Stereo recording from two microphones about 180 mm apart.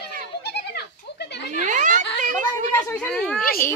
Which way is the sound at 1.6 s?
45° right (ahead or behind).